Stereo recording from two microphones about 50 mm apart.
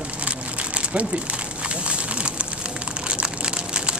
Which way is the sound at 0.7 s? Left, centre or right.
Right.